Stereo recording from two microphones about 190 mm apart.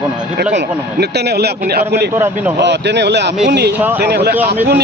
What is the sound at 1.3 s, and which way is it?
Speech, 60° right (ahead or behind).